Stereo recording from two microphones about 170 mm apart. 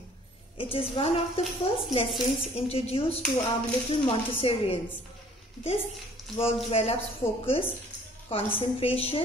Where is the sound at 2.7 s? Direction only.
35° left (ahead or behind).